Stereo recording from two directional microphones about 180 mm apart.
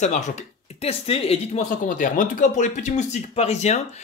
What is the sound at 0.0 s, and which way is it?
Speech, 40° left (ahead or behind).